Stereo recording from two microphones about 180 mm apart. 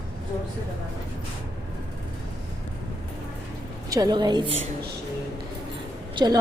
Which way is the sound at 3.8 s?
20° right (ahead or behind).